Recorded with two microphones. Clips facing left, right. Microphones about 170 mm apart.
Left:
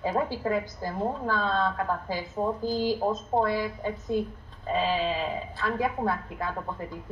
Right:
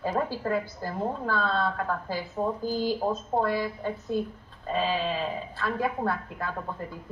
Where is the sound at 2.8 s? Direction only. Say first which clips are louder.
Even; 10° left (ahead or behind).